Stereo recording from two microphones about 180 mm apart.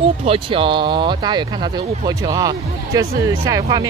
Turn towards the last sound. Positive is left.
turn(degrees=-20)  # may be behind; listen again after turning